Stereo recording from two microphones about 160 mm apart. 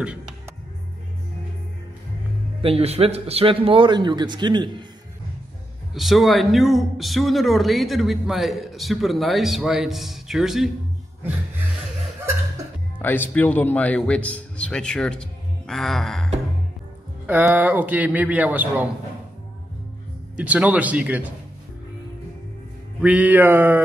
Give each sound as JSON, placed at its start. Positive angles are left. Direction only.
{"t": 2.6, "sound": "a man's voice", "side_deg": -40}
{"t": 5.9, "sound": "speech", "side_deg": 0}
{"t": 13.0, "sound": "a man's voice", "side_deg": 10}
{"t": 17.3, "sound": "a man's voice", "side_deg": -10}
{"t": 20.3, "sound": "a man's voice", "side_deg": -10}
{"t": 23.0, "sound": "a man's voice", "side_deg": -10}